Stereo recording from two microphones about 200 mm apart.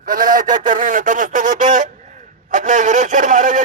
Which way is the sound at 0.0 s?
40° right (ahead or behind).